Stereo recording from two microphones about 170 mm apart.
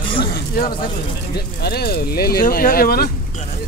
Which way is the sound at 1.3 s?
70° left (ahead or behind).